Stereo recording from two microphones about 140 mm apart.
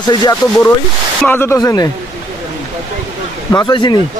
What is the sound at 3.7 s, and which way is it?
Speech, 30° left (ahead or behind).